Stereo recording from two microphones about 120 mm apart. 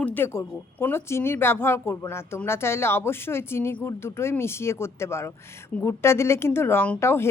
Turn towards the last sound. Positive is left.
turn(degrees=20)  # may be behind; listen again after turning